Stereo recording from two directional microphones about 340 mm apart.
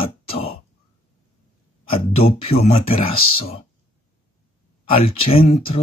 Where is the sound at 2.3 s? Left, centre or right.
Centre.